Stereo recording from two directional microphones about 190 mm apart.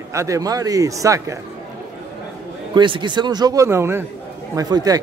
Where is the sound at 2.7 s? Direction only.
25° right (ahead or behind).